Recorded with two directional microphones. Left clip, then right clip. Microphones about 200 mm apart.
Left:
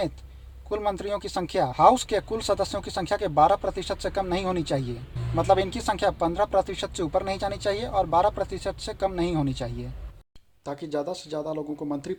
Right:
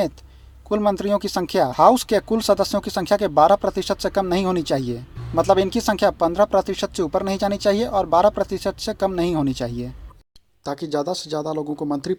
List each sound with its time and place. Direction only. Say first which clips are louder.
0.7 s speech: right 7 dB; 40° right (ahead or behind)
10.9 s speech: right 6 dB; 35° right (ahead or behind)